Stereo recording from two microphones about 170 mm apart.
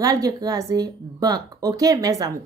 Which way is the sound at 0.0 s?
20° right (ahead or behind).